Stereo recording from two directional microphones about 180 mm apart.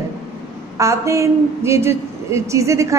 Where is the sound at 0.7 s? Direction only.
15° right (ahead or behind).